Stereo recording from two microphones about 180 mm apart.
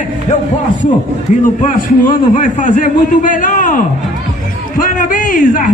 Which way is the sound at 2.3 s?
45° left (ahead or behind).